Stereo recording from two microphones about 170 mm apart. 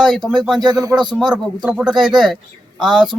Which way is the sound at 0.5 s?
25° right (ahead or behind).